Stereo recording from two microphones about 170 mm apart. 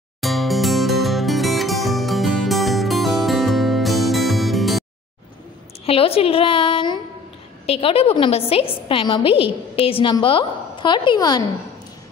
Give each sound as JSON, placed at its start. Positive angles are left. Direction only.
{"t": 0.2, "sound": "music", "side_deg": 0}
{"t": 5.9, "sound": "a woman's voice", "side_deg": 35}